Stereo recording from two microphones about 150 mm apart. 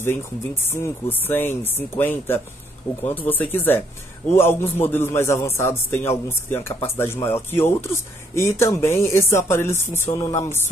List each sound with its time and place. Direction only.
0.0 s a man's voice: 15° left (ahead or behind)